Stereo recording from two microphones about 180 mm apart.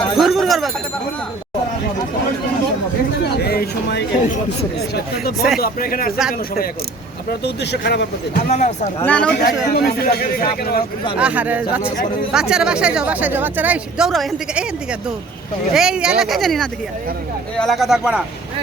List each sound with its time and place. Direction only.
0.2 s a sound: centre (ahead or behind)
3.2 s chatter: 65° left (ahead or behind)
5.1 s speech: 60° left (ahead or behind)
7.3 s speech: 65° left (ahead or behind)
8.4 s speech: 40° left (ahead or behind)
9.0 s speech: 5° left (ahead or behind)
9.7 s speech: 60° left (ahead or behind)
11.2 s speech: 5° right (ahead or behind)
15.7 s speech: 5° right (ahead or behind)